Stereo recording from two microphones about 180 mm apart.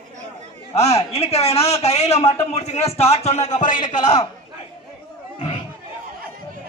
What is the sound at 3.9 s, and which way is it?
Speech, 25° left (ahead or behind).